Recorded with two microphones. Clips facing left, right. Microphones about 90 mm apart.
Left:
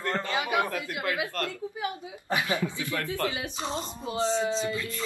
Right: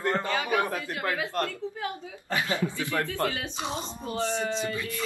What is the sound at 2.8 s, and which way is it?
Speech, 20° right (ahead or behind).